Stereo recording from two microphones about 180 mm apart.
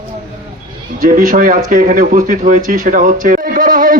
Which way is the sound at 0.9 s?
45° right (ahead or behind).